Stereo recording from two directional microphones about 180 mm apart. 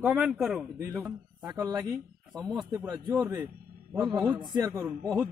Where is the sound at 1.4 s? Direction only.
20° right (ahead or behind).